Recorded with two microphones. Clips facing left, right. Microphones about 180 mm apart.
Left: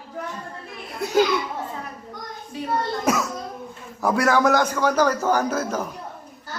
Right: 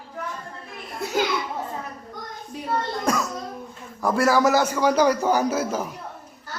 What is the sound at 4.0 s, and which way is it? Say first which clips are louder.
A man's voice: even; centre (ahead or behind).